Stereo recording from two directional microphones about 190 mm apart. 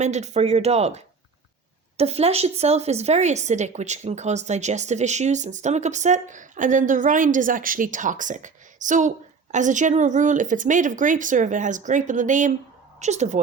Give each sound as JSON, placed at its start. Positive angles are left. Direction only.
{"t": 0.0, "sound": "a woman's voice", "side_deg": -35}